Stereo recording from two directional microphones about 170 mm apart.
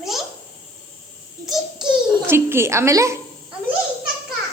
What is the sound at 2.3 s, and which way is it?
Speech, 15° right (ahead or behind).